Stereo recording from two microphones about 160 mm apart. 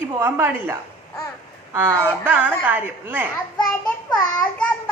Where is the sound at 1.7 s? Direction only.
10° right (ahead or behind).